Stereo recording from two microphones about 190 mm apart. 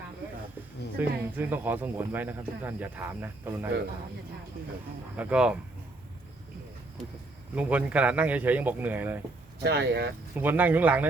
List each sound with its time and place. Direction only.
0.9 s speech: 10° right (ahead or behind)
5.1 s speech: 5° right (ahead or behind)
7.5 s speech: 5° right (ahead or behind)
9.6 s speech: 60° right (ahead or behind)
10.3 s speech: 10° right (ahead or behind)